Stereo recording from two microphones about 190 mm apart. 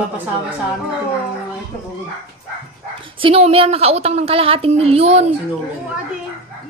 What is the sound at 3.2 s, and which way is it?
A woman's voice, 30° right (ahead or behind).